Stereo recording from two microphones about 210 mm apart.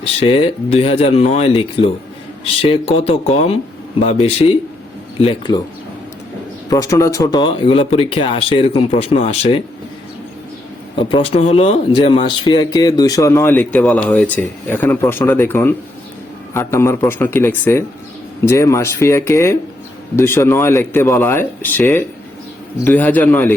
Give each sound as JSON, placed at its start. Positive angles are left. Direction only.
{"t": 0.0, "sound": "speech", "side_deg": 25}
{"t": 6.7, "sound": "speech", "side_deg": 15}
{"t": 10.9, "sound": "speech", "side_deg": 25}